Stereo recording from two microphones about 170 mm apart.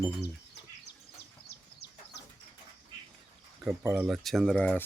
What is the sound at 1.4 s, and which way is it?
Chicken, 75° left (ahead or behind).